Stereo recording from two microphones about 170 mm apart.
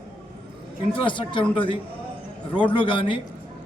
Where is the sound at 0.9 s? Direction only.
30° left (ahead or behind).